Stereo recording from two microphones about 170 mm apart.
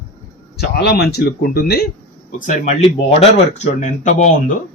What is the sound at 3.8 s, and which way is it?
Speech, 45° left (ahead or behind).